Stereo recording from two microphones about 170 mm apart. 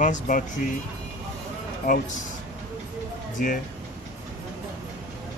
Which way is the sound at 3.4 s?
50° left (ahead or behind).